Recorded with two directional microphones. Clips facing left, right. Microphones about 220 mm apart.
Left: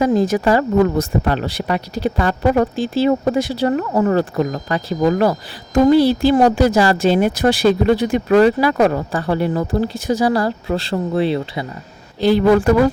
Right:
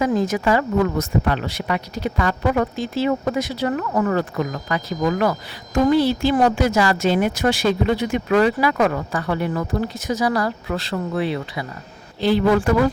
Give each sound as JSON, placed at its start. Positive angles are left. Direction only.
{"t": 0.0, "sound": "speech", "side_deg": 35}
{"t": 12.2, "sound": "speech", "side_deg": 40}